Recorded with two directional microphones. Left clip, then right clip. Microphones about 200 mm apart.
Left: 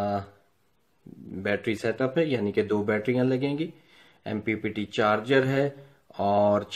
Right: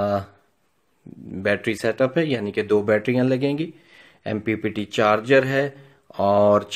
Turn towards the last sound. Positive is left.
turn(degrees=-40)  # may be behind; listen again after turning